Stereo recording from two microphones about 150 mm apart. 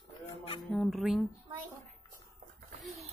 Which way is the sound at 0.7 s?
Centre (ahead or behind).